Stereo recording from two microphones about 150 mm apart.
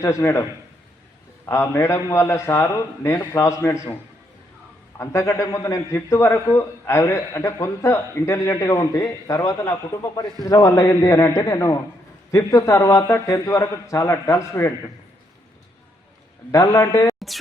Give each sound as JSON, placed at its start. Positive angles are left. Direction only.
{"t": 0.0, "sound": "a man's voice", "side_deg": 20}
{"t": 1.5, "sound": "a man's voice", "side_deg": 15}
{"t": 4.9, "sound": "a man's voice", "side_deg": 20}
{"t": 16.5, "sound": "a man's voice", "side_deg": 20}